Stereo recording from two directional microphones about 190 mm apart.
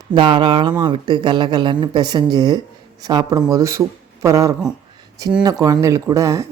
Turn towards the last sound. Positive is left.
turn(degrees=-15)  # may be behind; listen again after turning